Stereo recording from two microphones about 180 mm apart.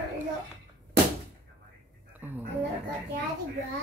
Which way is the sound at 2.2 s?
10° right (ahead or behind).